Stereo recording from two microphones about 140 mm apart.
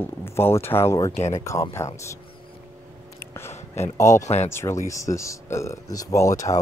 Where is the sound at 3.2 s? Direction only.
20° left (ahead or behind).